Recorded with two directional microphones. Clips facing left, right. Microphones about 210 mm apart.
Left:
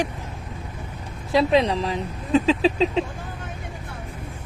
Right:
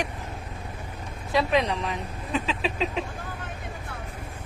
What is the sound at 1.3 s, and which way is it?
Speech, 30° left (ahead or behind).